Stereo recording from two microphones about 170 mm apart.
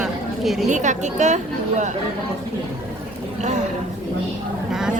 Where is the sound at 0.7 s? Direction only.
45° right (ahead or behind).